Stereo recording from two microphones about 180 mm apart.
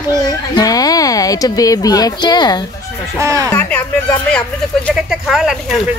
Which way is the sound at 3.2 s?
15° right (ahead or behind).